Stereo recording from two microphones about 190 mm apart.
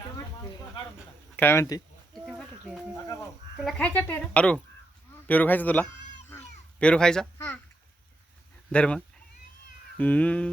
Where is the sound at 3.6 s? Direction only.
Centre (ahead or behind).